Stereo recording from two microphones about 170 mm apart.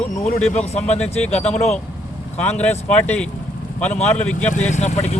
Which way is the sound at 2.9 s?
5° left (ahead or behind).